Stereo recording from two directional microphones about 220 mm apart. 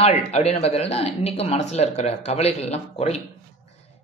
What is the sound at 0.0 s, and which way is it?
Speech, 30° left (ahead or behind).